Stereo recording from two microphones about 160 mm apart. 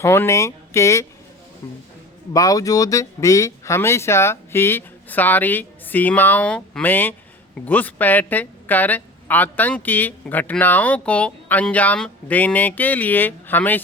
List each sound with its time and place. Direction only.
0.0 s speech: 15° left (ahead or behind)